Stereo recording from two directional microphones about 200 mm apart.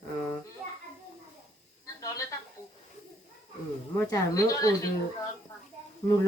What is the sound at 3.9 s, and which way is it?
Speech, 15° left (ahead or behind).